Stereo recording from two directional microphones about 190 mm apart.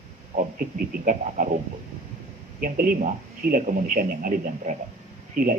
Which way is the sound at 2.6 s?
45° right (ahead or behind).